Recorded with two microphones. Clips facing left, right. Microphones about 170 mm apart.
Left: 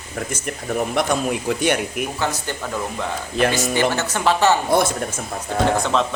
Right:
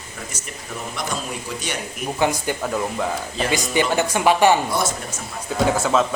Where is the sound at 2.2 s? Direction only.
15° right (ahead or behind).